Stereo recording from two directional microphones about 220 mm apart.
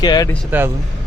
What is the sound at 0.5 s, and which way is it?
Speech, 10° right (ahead or behind).